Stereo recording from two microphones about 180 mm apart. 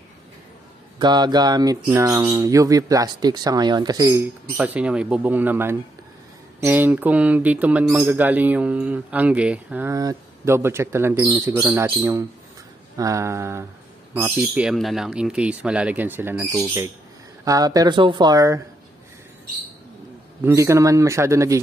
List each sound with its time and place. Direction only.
0.9 s speech: 25° right (ahead or behind)
4.6 s speech: 5° right (ahead or behind)
20.4 s speech: 15° right (ahead or behind)